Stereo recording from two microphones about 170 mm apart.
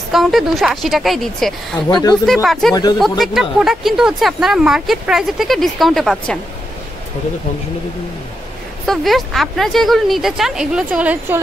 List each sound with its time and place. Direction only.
0.1 s speech: centre (ahead or behind)
1.9 s speech: 25° left (ahead or behind)
2.2 s speech: centre (ahead or behind)
2.7 s speech: 25° left (ahead or behind)
3.0 s speech: centre (ahead or behind)
8.8 s speech: centre (ahead or behind)